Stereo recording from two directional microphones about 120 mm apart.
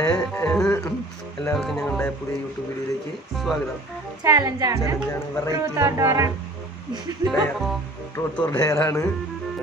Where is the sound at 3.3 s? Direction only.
Centre (ahead or behind).